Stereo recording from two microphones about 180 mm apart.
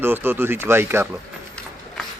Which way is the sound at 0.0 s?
15° right (ahead or behind).